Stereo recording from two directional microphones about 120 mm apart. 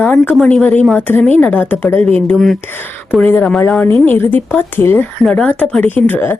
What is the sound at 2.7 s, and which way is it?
A woman's voice, 15° left (ahead or behind).